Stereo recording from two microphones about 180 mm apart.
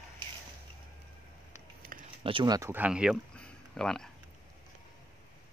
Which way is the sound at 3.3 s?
5° left (ahead or behind).